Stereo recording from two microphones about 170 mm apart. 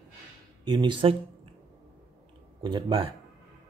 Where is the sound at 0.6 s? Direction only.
25° right (ahead or behind).